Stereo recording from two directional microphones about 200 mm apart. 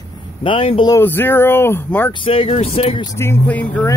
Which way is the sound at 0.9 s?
10° left (ahead or behind).